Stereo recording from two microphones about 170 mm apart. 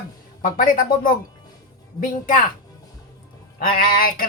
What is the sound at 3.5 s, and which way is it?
Speech, 55° left (ahead or behind).